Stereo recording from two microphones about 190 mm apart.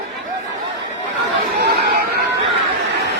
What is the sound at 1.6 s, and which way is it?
Speech, 60° right (ahead or behind).